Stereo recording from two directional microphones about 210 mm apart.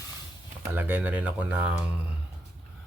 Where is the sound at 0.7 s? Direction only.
10° right (ahead or behind).